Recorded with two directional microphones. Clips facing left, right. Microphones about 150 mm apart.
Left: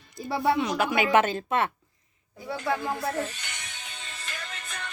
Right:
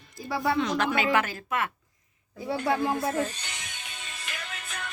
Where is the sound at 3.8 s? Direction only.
15° right (ahead or behind).